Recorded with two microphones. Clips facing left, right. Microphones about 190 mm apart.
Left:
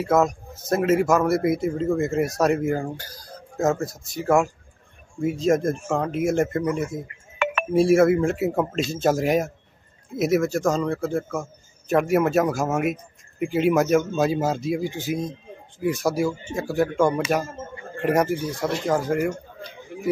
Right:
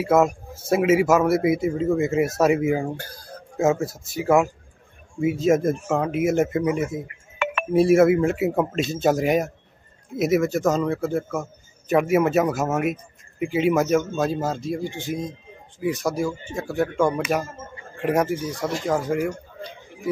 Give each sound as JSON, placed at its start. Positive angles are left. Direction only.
{"t": 0.0, "sound": "speech", "side_deg": -5}
{"t": 3.0, "sound": "speech", "side_deg": -55}
{"t": 3.5, "sound": "a man's voice", "side_deg": -5}